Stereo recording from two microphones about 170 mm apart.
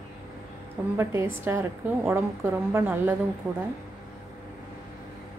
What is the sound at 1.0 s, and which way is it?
A woman's voice, 15° right (ahead or behind).